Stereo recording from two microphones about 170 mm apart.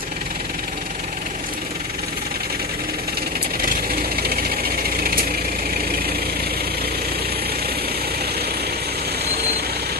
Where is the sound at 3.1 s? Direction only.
65° right (ahead or behind).